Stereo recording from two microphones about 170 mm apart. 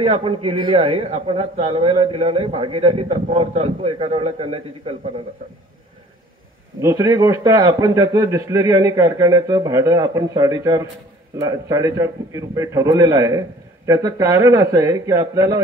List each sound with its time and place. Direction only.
0.0 s a man's voice: 35° right (ahead or behind)
6.8 s a man's voice: 20° right (ahead or behind)